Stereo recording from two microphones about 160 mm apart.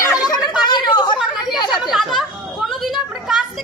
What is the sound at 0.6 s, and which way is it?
Chatter, 25° left (ahead or behind).